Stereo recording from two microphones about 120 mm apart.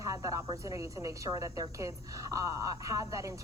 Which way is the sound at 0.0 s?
25° right (ahead or behind).